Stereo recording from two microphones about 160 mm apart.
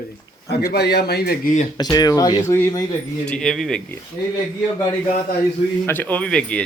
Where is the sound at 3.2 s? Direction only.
5° left (ahead or behind).